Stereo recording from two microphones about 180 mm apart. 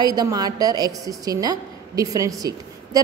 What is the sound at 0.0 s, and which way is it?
A woman's voice, 20° right (ahead or behind).